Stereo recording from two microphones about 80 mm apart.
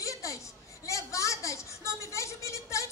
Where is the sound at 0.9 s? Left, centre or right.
Left.